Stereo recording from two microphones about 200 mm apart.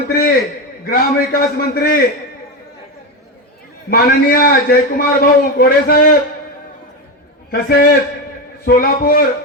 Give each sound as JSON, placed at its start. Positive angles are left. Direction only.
{"t": 0.1, "sound": "a sound", "side_deg": 50}
{"t": 0.9, "sound": "a man's voice", "side_deg": 50}
{"t": 3.8, "sound": "a man's voice", "side_deg": 50}
{"t": 7.5, "sound": "a man's voice", "side_deg": 45}